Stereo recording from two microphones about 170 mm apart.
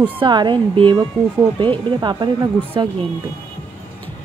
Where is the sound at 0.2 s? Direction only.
25° right (ahead or behind).